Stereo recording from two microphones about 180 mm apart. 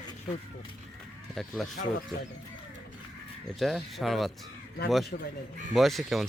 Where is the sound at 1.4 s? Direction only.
Centre (ahead or behind).